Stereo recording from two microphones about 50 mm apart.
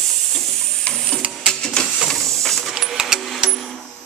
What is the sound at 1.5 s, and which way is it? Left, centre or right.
Printer, centre.